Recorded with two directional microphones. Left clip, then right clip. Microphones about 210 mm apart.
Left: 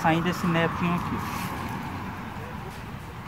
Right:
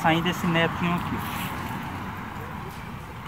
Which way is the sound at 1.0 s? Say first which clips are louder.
Right 1 dB; 15° right (ahead or behind).